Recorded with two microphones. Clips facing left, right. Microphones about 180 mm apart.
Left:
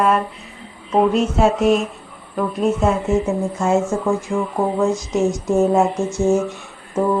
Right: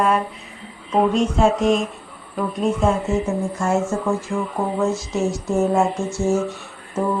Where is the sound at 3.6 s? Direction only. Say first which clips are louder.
Left 3 dB; 20° left (ahead or behind).